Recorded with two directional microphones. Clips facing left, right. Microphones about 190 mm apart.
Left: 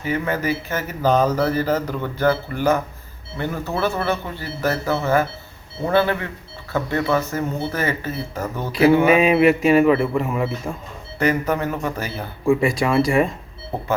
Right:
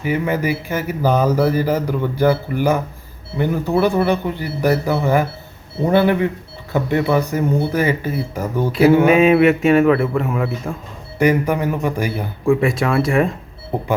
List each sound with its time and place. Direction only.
0.0 s speech: 10° right (ahead or behind)
9.0 s a man's voice: centre (ahead or behind)
11.2 s speech: 10° right (ahead or behind)
12.5 s a man's voice: centre (ahead or behind)
13.7 s speech: 15° right (ahead or behind)